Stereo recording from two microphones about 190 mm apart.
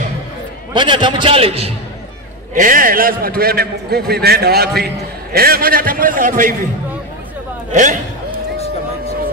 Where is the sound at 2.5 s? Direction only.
45° right (ahead or behind).